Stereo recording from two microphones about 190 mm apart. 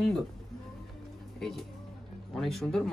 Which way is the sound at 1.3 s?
Centre (ahead or behind).